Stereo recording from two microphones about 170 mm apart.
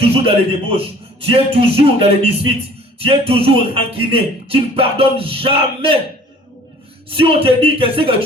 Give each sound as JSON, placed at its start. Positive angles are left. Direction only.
{"t": 0.0, "sound": "speech", "side_deg": -35}
{"t": 7.1, "sound": "speech", "side_deg": -30}